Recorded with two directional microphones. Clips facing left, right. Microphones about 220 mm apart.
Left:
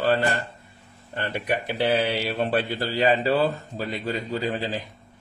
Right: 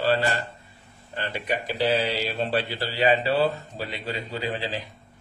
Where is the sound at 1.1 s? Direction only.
55° left (ahead or behind).